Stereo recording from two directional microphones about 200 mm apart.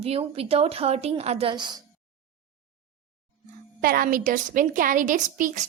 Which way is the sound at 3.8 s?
45° right (ahead or behind).